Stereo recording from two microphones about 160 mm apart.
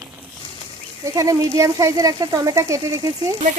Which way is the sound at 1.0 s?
20° right (ahead or behind).